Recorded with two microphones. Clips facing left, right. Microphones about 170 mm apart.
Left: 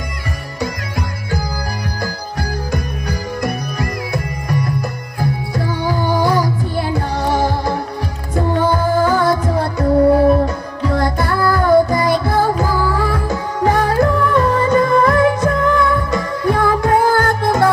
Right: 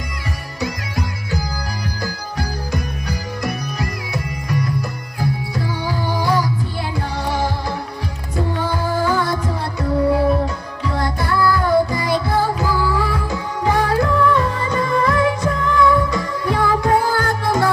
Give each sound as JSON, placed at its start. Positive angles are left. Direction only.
{"t": 0.6, "sound": "music", "side_deg": 50}
{"t": 3.1, "sound": "music", "side_deg": 50}